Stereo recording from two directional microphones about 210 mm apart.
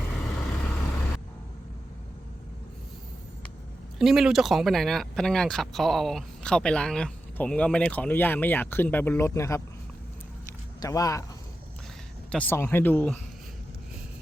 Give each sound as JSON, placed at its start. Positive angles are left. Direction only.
{"t": 0.3, "sound": "vehicle", "side_deg": 5}
{"t": 3.9, "sound": "speech", "side_deg": 0}
{"t": 10.4, "sound": "a sound", "side_deg": 15}
{"t": 12.3, "sound": "speech", "side_deg": 10}